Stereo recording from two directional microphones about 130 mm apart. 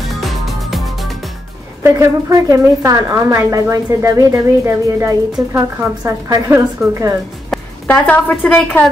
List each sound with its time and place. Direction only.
0.1 s music: centre (ahead or behind)
1.8 s a woman's voice: 25° right (ahead or behind)
7.8 s a woman's voice: 10° left (ahead or behind)